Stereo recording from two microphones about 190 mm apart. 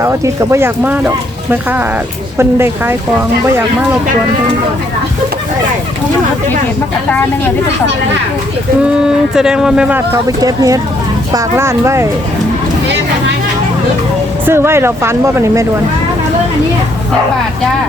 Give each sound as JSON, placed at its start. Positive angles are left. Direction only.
{"t": 0.0, "sound": "speech", "side_deg": -15}
{"t": 8.8, "sound": "speech", "side_deg": -5}
{"t": 10.2, "sound": "speech", "side_deg": -20}
{"t": 14.4, "sound": "speech", "side_deg": -15}